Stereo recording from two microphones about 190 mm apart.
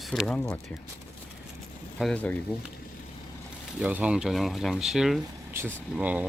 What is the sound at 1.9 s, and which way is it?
Speech, 5° left (ahead or behind).